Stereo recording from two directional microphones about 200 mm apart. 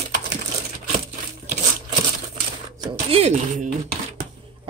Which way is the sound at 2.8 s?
30° right (ahead or behind).